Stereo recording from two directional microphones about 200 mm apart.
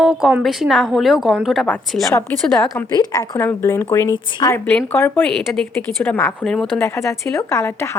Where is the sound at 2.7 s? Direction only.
20° left (ahead or behind).